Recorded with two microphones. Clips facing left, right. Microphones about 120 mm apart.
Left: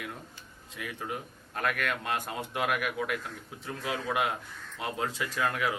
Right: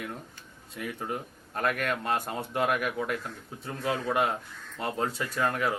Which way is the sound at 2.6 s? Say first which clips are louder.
Right 3 dB; 30° right (ahead or behind).